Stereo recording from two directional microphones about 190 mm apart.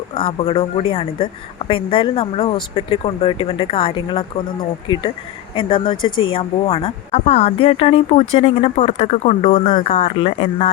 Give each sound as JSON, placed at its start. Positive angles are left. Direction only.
{"t": 0.1, "sound": "speech", "side_deg": 30}
{"t": 5.5, "sound": "speech", "side_deg": 25}
{"t": 9.5, "sound": "speech", "side_deg": 25}
{"t": 9.8, "sound": "speech", "side_deg": 35}